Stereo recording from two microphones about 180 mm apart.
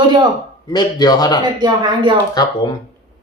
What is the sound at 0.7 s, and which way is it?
Speech, 20° left (ahead or behind).